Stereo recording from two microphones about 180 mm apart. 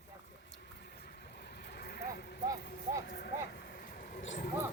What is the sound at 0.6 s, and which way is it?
Vehicle, 60° left (ahead or behind).